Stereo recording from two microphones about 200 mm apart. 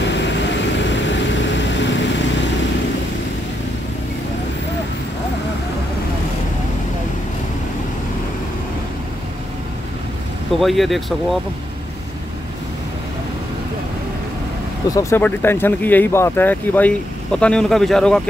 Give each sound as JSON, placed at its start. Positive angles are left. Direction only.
{"t": 0.0, "sound": "vehicle", "side_deg": 60}
{"t": 10.6, "sound": "speech", "side_deg": 0}
{"t": 14.9, "sound": "speech", "side_deg": 15}